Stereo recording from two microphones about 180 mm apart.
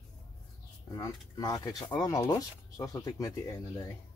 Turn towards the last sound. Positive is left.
turn(degrees=20)  # may be behind; listen again after turning